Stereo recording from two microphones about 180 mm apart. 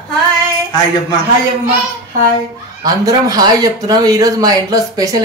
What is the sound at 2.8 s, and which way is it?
Speech, 20° right (ahead or behind).